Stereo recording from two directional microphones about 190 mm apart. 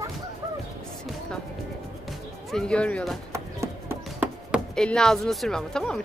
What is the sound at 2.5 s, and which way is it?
Speech, 5° left (ahead or behind).